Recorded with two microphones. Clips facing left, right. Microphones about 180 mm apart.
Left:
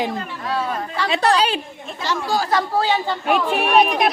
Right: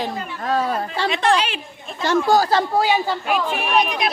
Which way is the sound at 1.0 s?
35° left (ahead or behind).